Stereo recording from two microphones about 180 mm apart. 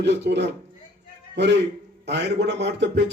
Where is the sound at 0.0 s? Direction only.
75° right (ahead or behind).